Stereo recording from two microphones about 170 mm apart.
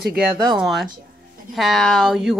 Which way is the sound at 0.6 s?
Centre (ahead or behind).